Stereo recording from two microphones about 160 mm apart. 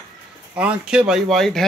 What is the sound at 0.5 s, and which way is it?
Speech, 10° right (ahead or behind).